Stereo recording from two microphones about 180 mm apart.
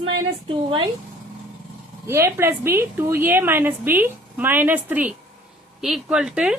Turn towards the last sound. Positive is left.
turn(degrees=-5)  # may be behind; listen again after turning